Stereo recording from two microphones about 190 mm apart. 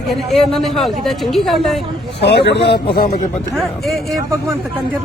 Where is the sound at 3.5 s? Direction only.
Centre (ahead or behind).